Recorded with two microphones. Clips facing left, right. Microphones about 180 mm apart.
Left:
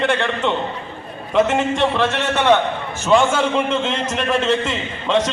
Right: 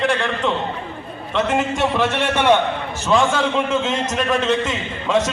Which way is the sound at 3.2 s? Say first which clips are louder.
Right 1 dB; centre (ahead or behind).